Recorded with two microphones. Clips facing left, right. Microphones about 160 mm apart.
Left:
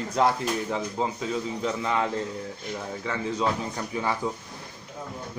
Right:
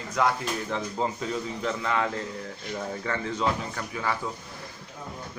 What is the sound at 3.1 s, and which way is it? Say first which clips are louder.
Speech: even; centre (ahead or behind).